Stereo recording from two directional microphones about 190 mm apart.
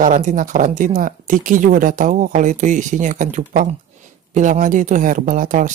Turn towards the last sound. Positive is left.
turn(degrees=-45)  # may be behind; listen again after turning